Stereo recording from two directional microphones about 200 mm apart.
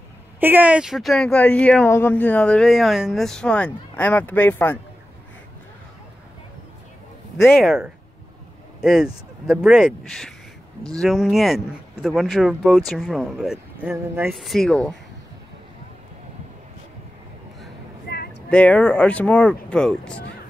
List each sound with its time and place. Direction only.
0.4 s speech: 10° right (ahead or behind); by 4.7 s 10° left (ahead or behind)
7.4 s speech: centre (ahead or behind)
14.3 s speech: centre (ahead or behind)
18.0 s a sound: 50° left (ahead or behind)
18.5 s speech: 5° left (ahead or behind)